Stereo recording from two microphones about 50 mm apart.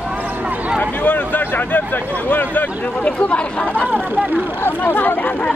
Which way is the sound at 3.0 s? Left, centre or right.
Left.